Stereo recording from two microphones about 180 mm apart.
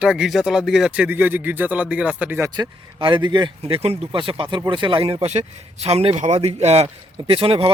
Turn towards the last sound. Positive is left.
turn(degrees=-30)  # may be behind; listen again after turning